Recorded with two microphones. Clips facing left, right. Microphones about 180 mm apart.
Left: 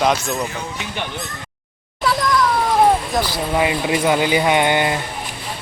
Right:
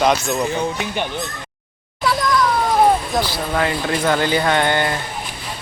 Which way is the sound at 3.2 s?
15° left (ahead or behind).